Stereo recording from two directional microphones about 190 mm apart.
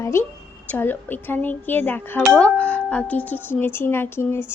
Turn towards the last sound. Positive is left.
turn(degrees=10)  # may be behind; listen again after turning